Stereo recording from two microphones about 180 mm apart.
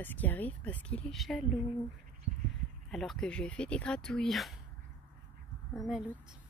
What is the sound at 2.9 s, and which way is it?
A woman's voice, centre (ahead or behind).